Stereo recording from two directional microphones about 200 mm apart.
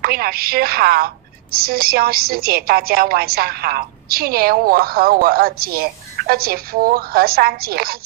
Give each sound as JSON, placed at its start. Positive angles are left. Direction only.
{"t": 0.0, "sound": "a woman's voice", "side_deg": -50}